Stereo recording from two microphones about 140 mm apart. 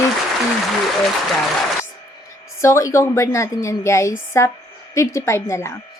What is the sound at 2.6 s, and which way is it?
A woman's voice, 20° left (ahead or behind).